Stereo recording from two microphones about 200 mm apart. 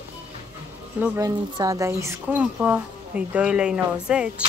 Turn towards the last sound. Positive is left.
turn(degrees=-5)  # may be behind; listen again after turning